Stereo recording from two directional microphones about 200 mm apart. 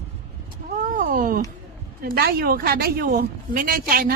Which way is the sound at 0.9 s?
45° right (ahead or behind).